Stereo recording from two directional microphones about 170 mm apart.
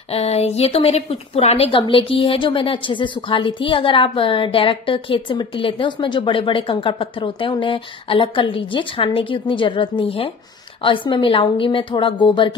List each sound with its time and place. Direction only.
0.1 s a woman's voice: 35° left (ahead or behind)